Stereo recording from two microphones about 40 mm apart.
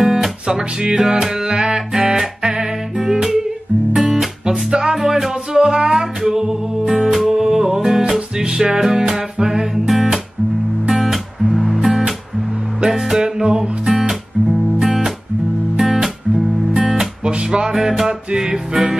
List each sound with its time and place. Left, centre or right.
0.0 s music: centre
4.9 s music: centre
5.6 s music: right
10.9 s music: centre
12.8 s music: centre
13.8 s music: centre
17.2 s music: right